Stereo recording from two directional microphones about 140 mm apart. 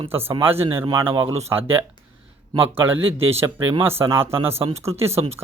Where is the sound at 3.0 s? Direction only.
45° right (ahead or behind).